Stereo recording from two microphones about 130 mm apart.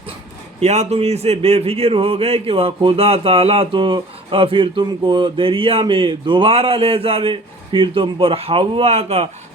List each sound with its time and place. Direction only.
0.6 s a man's voice: 55° right (ahead or behind)